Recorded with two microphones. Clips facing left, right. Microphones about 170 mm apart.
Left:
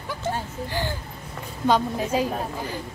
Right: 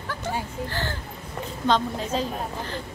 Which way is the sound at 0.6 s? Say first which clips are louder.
Left 2 dB; 15° left (ahead or behind).